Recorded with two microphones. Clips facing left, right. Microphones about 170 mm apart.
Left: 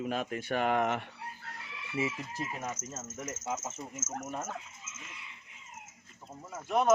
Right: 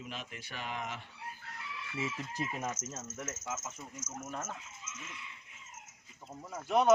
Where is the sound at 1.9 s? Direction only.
15° left (ahead or behind).